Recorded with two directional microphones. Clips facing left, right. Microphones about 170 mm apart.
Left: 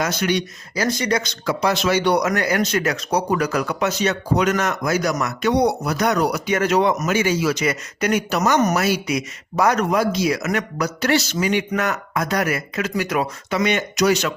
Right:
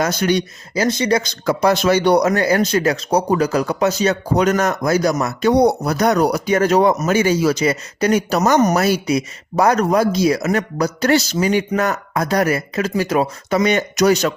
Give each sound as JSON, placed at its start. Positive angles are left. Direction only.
{"t": 0.0, "sound": "speech", "side_deg": -35}
{"t": 0.7, "sound": "speech", "side_deg": -25}
{"t": 1.5, "sound": "speech", "side_deg": -45}
{"t": 2.2, "sound": "speech", "side_deg": -30}
{"t": 5.5, "sound": "speech", "side_deg": -40}